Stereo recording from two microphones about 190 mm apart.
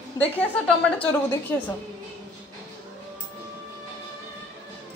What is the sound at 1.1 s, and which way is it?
Speech, 10° left (ahead or behind).